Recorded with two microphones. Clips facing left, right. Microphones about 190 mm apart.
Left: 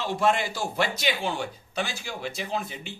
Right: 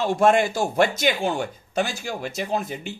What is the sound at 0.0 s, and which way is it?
A man's voice, 50° right (ahead or behind).